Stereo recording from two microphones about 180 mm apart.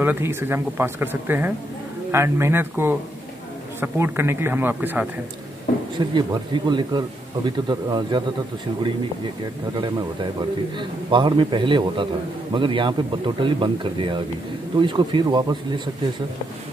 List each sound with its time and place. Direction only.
0.0 s speech: 10° right (ahead or behind)
5.9 s speech: 25° right (ahead or behind)
10.8 s speech: 25° right (ahead or behind)